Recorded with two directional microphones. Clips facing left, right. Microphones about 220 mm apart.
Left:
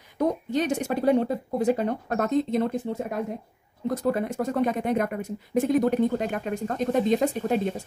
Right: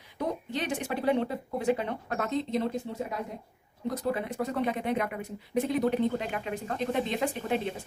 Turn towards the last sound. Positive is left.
turn(degrees=40)  # may be behind; listen again after turning